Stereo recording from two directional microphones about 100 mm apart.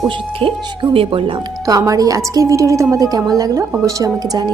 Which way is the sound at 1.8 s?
35° right (ahead or behind).